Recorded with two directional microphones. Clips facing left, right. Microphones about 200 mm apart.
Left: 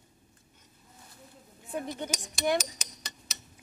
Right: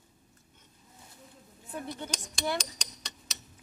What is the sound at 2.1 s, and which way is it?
Speech, 5° left (ahead or behind).